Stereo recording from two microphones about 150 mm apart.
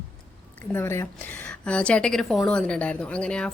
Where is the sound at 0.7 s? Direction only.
15° left (ahead or behind).